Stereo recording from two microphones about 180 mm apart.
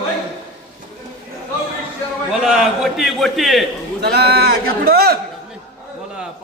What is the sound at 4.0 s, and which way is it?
A man's voice, 65° right (ahead or behind).